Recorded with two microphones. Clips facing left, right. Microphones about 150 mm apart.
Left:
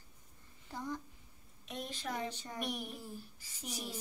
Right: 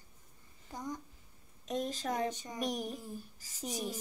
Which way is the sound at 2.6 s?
40° right (ahead or behind).